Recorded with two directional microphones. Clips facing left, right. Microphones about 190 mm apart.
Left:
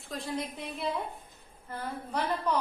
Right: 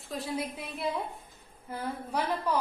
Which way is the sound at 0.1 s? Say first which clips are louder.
Right 1 dB; centre (ahead or behind).